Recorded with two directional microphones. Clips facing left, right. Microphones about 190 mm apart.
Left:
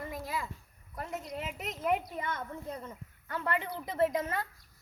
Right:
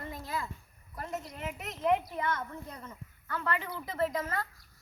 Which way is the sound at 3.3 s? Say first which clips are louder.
Left 1 dB; 20° left (ahead or behind).